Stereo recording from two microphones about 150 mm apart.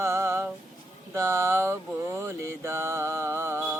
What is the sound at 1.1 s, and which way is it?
Mantra, 15° right (ahead or behind).